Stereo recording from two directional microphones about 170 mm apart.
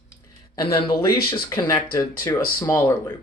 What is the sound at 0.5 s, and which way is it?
Speech, 25° left (ahead or behind).